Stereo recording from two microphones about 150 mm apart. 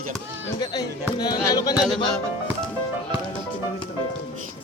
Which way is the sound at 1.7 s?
Centre (ahead or behind).